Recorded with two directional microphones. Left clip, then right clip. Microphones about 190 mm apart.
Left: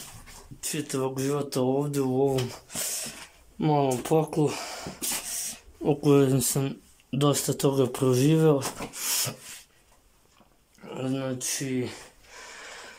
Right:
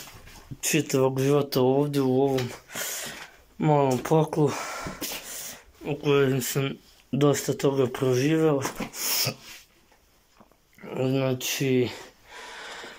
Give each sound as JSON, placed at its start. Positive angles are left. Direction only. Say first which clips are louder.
{"t": 0.6, "sound": "speech", "louder": "right 7 dB", "side_deg": -5}
{"t": 5.9, "sound": "speech", "louder": "left 1 dB", "side_deg": 25}
{"t": 8.9, "sound": "a sound", "louder": "right 3 dB", "side_deg": 0}
{"t": 10.8, "sound": "gasp", "louder": "right 5 dB", "side_deg": 0}